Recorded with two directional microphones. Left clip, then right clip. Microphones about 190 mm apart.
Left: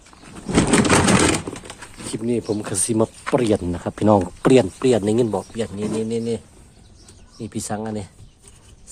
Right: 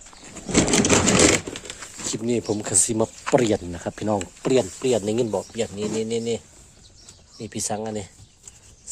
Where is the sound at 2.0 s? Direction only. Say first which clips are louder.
Left 1 dB; 15° right (ahead or behind).